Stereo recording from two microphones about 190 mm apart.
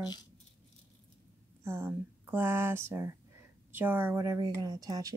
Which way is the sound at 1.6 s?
15° right (ahead or behind).